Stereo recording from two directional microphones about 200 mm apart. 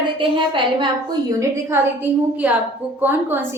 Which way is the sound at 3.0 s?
10° right (ahead or behind).